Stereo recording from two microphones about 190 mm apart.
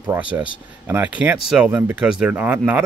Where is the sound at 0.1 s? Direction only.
10° right (ahead or behind).